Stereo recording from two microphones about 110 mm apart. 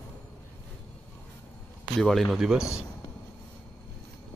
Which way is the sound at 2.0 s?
5° left (ahead or behind).